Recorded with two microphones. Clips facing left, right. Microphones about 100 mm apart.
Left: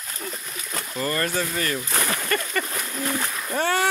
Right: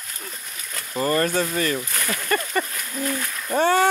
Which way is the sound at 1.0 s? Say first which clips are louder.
Right 5 dB; 30° right (ahead or behind).